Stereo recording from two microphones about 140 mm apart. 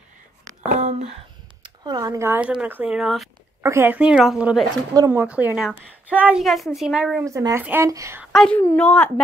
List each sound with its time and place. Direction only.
0.7 s speech: 50° right (ahead or behind)
1.6 s speech: 30° right (ahead or behind); by 3.3 s centre (ahead or behind)
3.6 s speech: 15° right (ahead or behind)
4.9 s speech: 25° right (ahead or behind)
5.2 s speech: 10° right (ahead or behind)
6.4 s a woman's voice: centre (ahead or behind)
7.2 s speech: 25° right (ahead or behind)
8.3 s a woman's voice: centre (ahead or behind)